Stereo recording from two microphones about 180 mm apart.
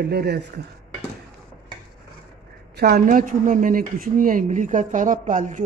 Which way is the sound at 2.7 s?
55° right (ahead or behind).